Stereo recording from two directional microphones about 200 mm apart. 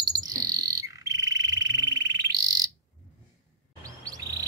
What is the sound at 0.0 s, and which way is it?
Frog, 20° right (ahead or behind).